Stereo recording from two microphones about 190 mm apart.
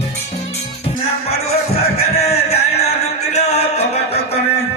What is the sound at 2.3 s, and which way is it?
Music, 60° left (ahead or behind).